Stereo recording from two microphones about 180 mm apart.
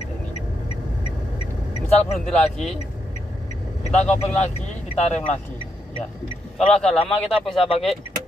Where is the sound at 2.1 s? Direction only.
Centre (ahead or behind).